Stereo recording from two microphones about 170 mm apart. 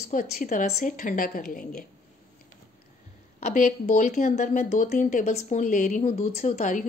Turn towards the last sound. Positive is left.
turn(degrees=45)  # may be behind; listen again after turning